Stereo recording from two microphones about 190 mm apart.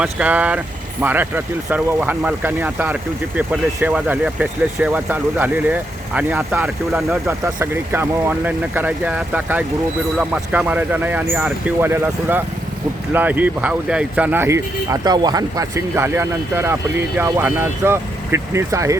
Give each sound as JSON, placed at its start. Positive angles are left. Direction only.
{"t": 0.0, "sound": "speech", "side_deg": -10}